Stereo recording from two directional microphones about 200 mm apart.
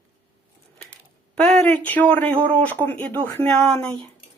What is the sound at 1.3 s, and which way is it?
Speech, 5° left (ahead or behind).